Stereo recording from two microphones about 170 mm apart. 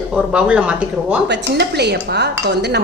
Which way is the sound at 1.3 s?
75° right (ahead or behind).